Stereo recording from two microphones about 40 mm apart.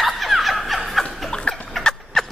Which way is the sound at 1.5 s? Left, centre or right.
Left.